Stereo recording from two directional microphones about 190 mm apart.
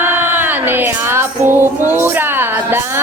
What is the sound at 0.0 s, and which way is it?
Female singing, 10° right (ahead or behind).